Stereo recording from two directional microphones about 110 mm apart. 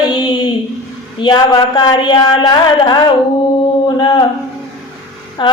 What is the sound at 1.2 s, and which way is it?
Female singing, 40° left (ahead or behind).